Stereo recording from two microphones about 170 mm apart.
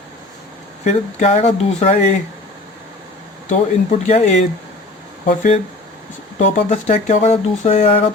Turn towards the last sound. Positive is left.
turn(degrees=40)  # may be behind; listen again after turning